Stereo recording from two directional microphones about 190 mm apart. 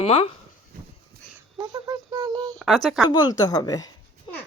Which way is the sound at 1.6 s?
20° right (ahead or behind).